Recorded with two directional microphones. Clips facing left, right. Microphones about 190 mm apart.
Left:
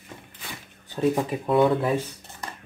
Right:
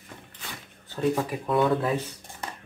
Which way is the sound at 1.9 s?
15° right (ahead or behind).